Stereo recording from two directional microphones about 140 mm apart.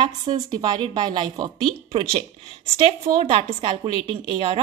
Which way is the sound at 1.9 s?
40° right (ahead or behind).